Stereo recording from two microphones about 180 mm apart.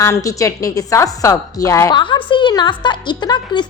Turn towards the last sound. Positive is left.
turn(degrees=25)  # may be behind; listen again after turning